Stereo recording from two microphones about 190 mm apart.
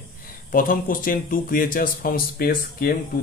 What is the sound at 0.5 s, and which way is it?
Speech, 45° left (ahead or behind).